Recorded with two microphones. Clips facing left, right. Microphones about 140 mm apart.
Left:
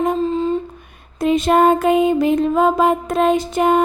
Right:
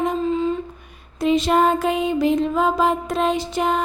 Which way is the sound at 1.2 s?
50° left (ahead or behind).